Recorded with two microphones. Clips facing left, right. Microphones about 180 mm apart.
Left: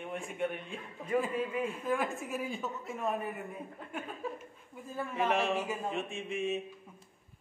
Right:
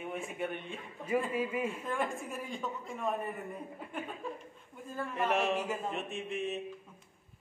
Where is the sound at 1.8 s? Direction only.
5° left (ahead or behind).